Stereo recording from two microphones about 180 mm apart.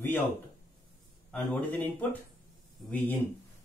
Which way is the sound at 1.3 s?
10° left (ahead or behind).